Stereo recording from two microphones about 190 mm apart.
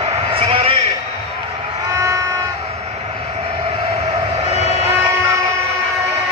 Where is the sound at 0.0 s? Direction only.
30° right (ahead or behind).